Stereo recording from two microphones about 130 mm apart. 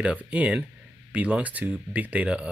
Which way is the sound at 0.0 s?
10° right (ahead or behind).